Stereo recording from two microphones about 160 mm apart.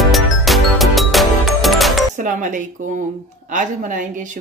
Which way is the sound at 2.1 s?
55° right (ahead or behind).